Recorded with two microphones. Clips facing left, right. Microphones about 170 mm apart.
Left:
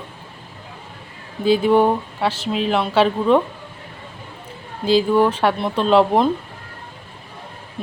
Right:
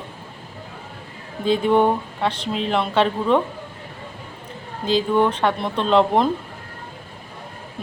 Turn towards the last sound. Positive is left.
turn(degrees=5)  # may be behind; listen again after turning